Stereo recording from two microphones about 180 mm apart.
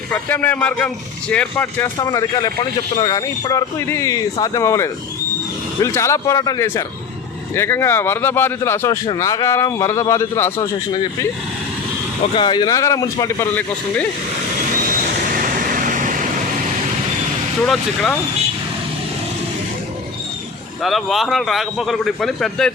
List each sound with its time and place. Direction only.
0.1 s speech: 10° left (ahead or behind)
2.0 s speech: 25° left (ahead or behind)
15.4 s vehicle: 50° right (ahead or behind)
17.7 s speech: 5° left (ahead or behind)
20.8 s speech: centre (ahead or behind)